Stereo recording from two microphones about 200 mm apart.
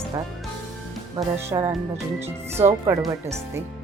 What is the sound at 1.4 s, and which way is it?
Speech, 10° right (ahead or behind).